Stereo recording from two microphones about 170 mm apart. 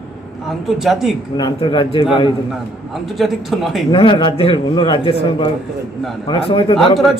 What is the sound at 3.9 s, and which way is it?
A man's voice, 30° left (ahead or behind).